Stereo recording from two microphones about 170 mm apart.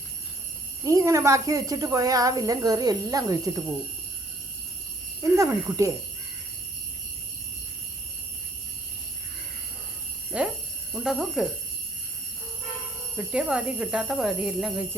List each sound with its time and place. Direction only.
0.9 s a woman's voice: 20° right (ahead or behind)
5.2 s speech: 15° right (ahead or behind)
10.3 s alarm: 5° right (ahead or behind)
10.9 s speech: centre (ahead or behind)
13.1 s speech: 5° right (ahead or behind)